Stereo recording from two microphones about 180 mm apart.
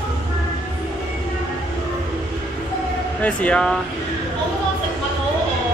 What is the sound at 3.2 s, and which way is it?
Speech, 5° left (ahead or behind).